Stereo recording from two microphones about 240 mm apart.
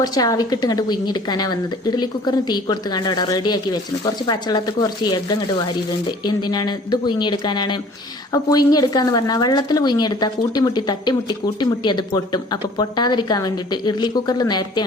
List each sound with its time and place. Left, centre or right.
0.0 s a woman's voice: centre